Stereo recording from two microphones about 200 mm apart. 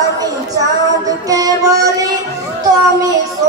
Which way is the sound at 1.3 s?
15° right (ahead or behind).